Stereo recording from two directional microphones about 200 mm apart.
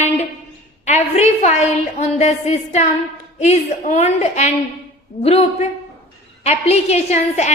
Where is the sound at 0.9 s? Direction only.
35° left (ahead or behind).